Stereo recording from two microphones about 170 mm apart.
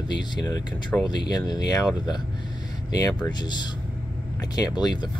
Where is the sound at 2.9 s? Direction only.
25° left (ahead or behind).